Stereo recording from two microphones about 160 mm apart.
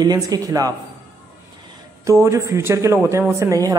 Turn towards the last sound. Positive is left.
turn(degrees=-20)  # may be behind; listen again after turning